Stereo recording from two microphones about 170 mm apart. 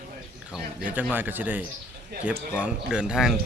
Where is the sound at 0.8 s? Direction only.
10° right (ahead or behind).